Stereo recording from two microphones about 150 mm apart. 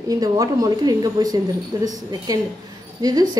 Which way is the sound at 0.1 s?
25° right (ahead or behind).